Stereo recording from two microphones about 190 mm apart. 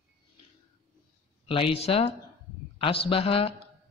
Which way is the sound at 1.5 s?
30° left (ahead or behind).